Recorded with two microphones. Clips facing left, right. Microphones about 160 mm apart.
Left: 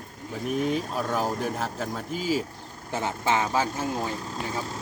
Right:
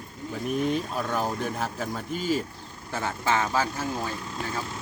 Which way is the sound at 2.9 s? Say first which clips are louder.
Left 1 dB; 20° left (ahead or behind).